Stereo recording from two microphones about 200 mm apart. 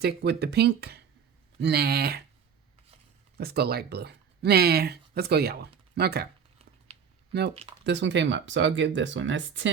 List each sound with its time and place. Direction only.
0.0 s speech: 55° right (ahead or behind)
3.3 s speech: 50° right (ahead or behind)
6.9 s typing: 30° right (ahead or behind)
7.9 s speech: 60° right (ahead or behind)